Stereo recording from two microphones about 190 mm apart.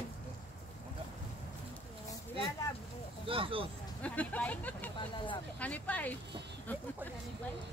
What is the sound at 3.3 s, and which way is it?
Speech, 30° right (ahead or behind).